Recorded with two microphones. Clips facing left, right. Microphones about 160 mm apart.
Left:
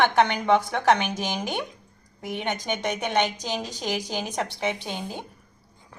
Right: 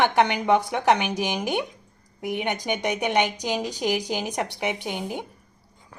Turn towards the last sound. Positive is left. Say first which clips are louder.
# right 3 dB
turn(degrees=-15)  # may be behind; listen again after turning